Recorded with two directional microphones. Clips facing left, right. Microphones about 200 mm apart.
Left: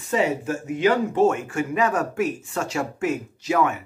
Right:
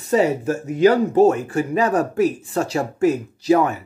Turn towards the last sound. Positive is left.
turn(degrees=-35)  # may be behind; listen again after turning